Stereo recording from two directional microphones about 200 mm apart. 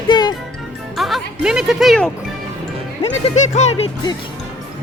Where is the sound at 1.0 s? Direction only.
Centre (ahead or behind).